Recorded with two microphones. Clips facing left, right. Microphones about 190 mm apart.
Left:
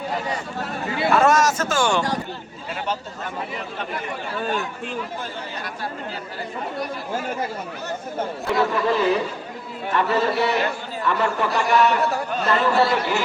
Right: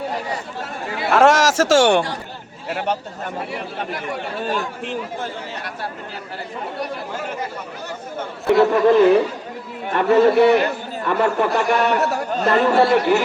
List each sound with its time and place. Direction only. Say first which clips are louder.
1.1 s a sound: right 4 dB; 85° right; by 2.0 s 65° right (ahead or behind)
2.6 s a man's voice: right 4 dB; 65° right (ahead or behind)
8.5 s a man's voice: right 8 dB; 55° right (ahead or behind)